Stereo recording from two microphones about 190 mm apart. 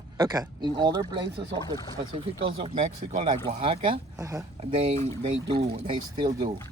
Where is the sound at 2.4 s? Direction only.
35° right (ahead or behind).